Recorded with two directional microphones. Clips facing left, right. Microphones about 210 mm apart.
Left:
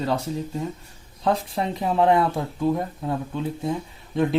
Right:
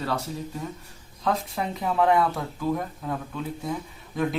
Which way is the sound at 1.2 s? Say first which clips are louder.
Left 3 dB; 30° left (ahead or behind).